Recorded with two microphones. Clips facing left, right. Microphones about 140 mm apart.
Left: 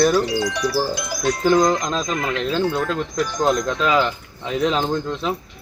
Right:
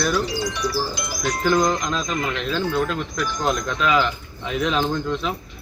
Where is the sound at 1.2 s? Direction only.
30° left (ahead or behind).